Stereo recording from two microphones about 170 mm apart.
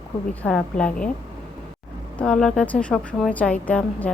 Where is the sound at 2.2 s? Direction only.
5° left (ahead or behind).